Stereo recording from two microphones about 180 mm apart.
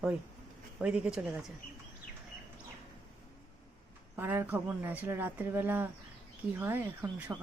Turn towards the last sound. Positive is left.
turn(degrees=-10)  # may be behind; listen again after turning